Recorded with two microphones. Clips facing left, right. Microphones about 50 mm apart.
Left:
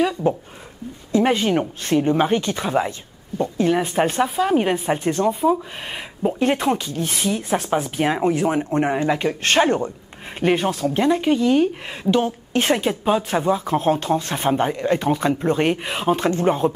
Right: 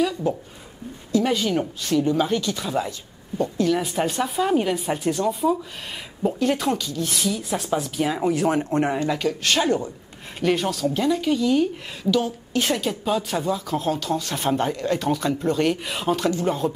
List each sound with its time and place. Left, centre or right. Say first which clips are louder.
0.2 s a woman's voice: left 4 dB; left
8.2 s a woman's voice: left 2 dB; left
10.4 s a woman's voice: left 3 dB; left